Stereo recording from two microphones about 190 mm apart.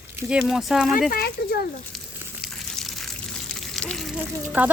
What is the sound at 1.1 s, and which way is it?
Speech, 55° left (ahead or behind).